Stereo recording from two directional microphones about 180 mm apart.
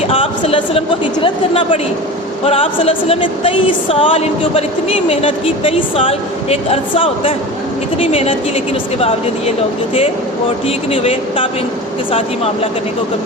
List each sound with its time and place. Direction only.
0.1 s a woman's voice: 30° left (ahead or behind)
10.9 s a woman's voice: 35° left (ahead or behind)